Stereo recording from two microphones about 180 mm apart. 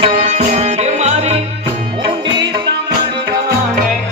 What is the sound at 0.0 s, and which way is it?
Music, 40° right (ahead or behind).